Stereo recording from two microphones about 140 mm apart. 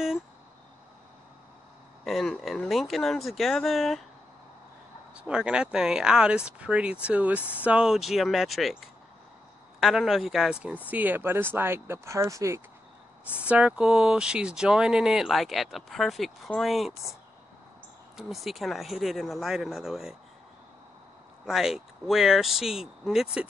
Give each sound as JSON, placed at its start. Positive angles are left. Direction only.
{"t": 2.0, "sound": "speech", "side_deg": 0}
{"t": 5.1, "sound": "speech", "side_deg": -5}
{"t": 9.8, "sound": "speech", "side_deg": -5}
{"t": 13.4, "sound": "speech", "side_deg": -10}
{"t": 18.1, "sound": "speech", "side_deg": 0}
{"t": 21.5, "sound": "speech", "side_deg": -5}